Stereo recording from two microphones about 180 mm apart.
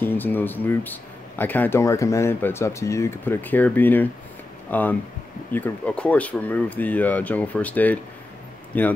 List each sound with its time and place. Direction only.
0.0 s speech: 10° left (ahead or behind)